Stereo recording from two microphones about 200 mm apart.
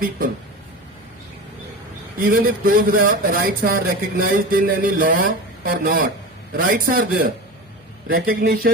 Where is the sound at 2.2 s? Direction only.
45° right (ahead or behind).